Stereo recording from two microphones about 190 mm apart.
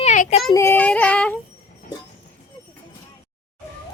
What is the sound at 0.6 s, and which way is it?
Speech, 10° left (ahead or behind).